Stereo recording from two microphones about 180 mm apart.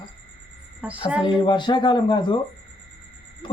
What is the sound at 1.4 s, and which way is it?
Speech, 25° left (ahead or behind).